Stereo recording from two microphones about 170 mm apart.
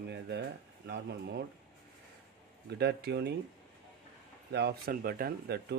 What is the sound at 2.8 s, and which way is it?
Speech, 80° right.